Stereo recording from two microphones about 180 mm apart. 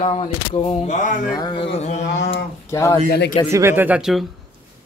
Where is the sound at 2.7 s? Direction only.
15° left (ahead or behind).